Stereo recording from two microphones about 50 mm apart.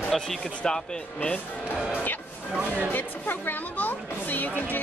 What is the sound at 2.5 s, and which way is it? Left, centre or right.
Speech, right.